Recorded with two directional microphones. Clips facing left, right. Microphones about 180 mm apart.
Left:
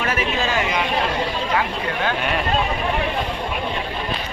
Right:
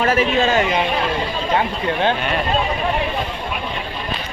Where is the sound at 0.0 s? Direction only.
35° right (ahead or behind).